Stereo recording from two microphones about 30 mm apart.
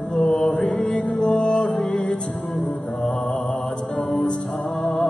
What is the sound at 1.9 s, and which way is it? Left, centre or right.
Music, left.